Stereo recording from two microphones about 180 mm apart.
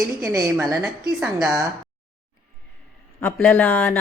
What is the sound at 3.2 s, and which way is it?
Speech, 10° left (ahead or behind).